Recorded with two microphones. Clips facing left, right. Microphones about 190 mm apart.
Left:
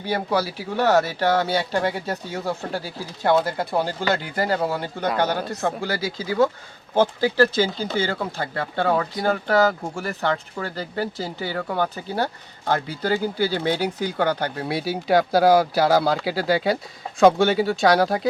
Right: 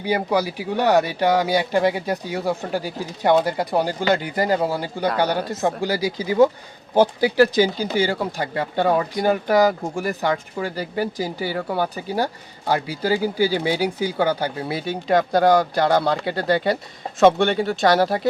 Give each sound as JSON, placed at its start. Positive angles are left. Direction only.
{"t": 0.0, "sound": "speech", "side_deg": -15}